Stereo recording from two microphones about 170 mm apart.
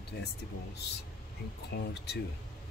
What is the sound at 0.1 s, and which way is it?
Speech, 70° left (ahead or behind).